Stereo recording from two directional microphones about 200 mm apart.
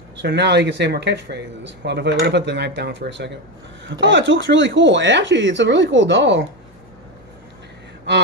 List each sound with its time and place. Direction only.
0.2 s speech: 60° right (ahead or behind)